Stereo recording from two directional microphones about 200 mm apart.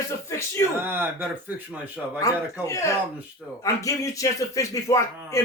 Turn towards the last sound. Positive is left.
turn(degrees=15)  # may be behind; listen again after turning